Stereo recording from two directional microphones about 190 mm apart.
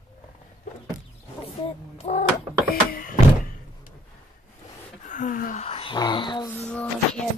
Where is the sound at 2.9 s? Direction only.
50° left (ahead or behind).